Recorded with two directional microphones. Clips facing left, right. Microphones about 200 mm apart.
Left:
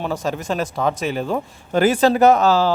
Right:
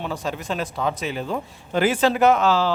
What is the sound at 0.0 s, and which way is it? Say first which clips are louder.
A man's voice: left 4 dB; 45° left (ahead or behind).